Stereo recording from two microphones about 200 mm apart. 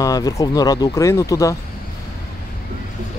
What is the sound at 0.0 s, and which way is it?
Speech, 20° left (ahead or behind).